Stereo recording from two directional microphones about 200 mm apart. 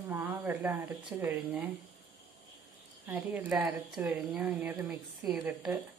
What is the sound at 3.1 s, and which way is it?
A woman's voice, 10° right (ahead or behind).